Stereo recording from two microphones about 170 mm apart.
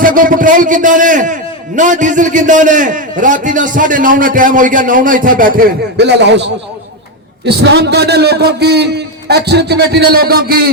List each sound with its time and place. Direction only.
0.0 s a man's voice: 55° right (ahead or behind)